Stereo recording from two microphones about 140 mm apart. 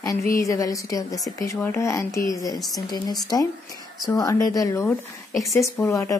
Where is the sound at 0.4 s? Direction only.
25° left (ahead or behind).